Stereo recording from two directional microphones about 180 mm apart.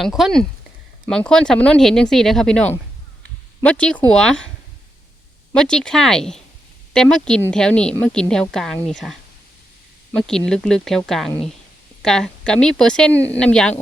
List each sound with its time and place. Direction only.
0.0 s a woman's voice: centre (ahead or behind)
5.5 s a woman's voice: 5° left (ahead or behind)
13.1 s speech: 15° right (ahead or behind)
13.4 s a woman's voice: 5° left (ahead or behind)